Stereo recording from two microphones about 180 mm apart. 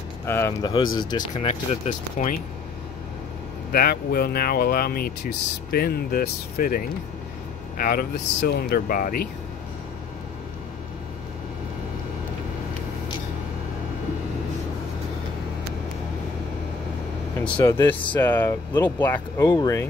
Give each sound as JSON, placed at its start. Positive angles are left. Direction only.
{"t": 0.3, "sound": "speech", "side_deg": 15}
{"t": 1.9, "sound": "speech", "side_deg": 45}
{"t": 3.7, "sound": "speech", "side_deg": 60}
{"t": 17.5, "sound": "speech", "side_deg": 25}
{"t": 18.1, "sound": "speech", "side_deg": 10}